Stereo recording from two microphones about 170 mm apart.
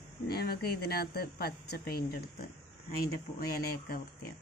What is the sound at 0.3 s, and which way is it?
A woman's voice, 65° left (ahead or behind).